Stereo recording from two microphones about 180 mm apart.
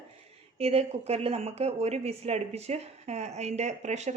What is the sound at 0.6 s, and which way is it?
A woman's voice, 35° right (ahead or behind).